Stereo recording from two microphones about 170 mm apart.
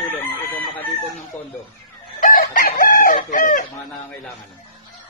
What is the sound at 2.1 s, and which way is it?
Chicken, 55° left (ahead or behind).